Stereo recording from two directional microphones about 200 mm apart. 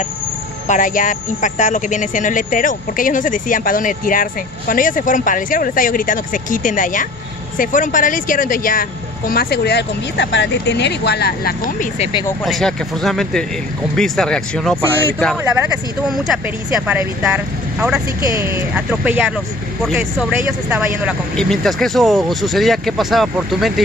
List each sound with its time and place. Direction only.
0.7 s speech: 40° left (ahead or behind)
12.0 s speech: 25° left (ahead or behind)
12.4 s speech: centre (ahead or behind)